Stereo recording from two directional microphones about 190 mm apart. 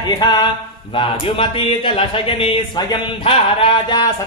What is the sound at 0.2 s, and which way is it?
Speech, 20° left (ahead or behind).